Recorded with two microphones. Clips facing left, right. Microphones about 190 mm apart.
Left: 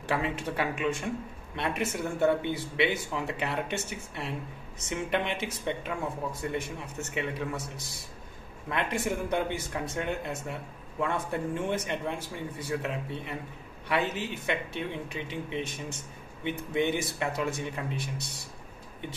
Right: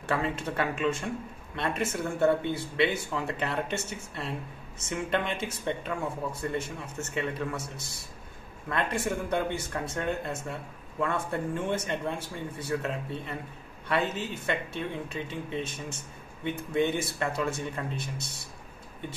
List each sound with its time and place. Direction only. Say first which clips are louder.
0.1 s speech: right 1 dB; 15° left (ahead or behind)